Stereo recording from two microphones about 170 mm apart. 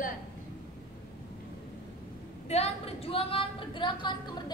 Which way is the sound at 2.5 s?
35° left (ahead or behind).